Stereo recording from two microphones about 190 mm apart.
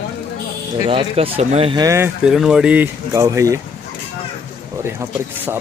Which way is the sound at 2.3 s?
Centre (ahead or behind).